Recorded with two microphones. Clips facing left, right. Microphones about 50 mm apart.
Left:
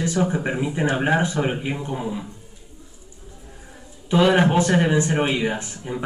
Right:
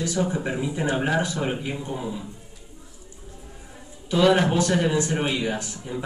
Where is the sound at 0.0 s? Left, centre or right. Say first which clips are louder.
Left 3 dB; left.